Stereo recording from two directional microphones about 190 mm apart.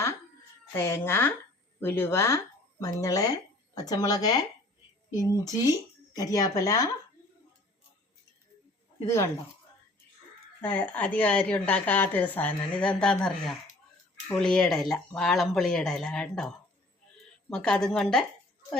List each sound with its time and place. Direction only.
0.7 s a woman's voice: 15° left (ahead or behind)
9.0 s a woman's voice: 15° left (ahead or behind)
10.6 s a woman's voice: 5° left (ahead or behind)
17.5 s speech: 5° left (ahead or behind)